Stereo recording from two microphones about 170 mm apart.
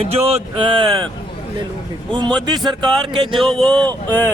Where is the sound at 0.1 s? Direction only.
35° right (ahead or behind).